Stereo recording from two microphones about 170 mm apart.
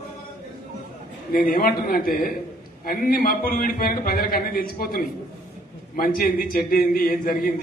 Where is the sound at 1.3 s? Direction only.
60° left (ahead or behind).